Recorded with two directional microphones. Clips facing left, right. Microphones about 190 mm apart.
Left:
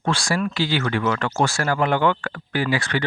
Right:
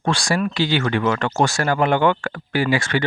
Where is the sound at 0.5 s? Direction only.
20° right (ahead or behind).